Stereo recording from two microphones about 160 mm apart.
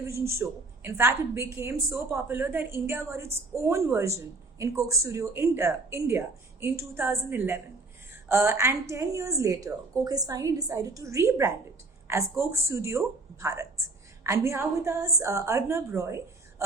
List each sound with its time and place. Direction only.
0.0 s a woman's voice: 15° right (ahead or behind)